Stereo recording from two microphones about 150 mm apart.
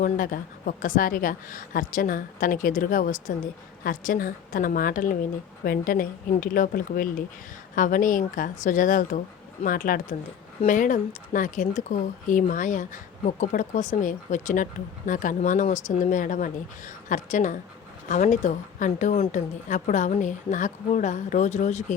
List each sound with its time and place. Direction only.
0.0 s speech: 65° left (ahead or behind)
19.1 s speech: 40° left (ahead or behind)
19.6 s speech: 55° left (ahead or behind)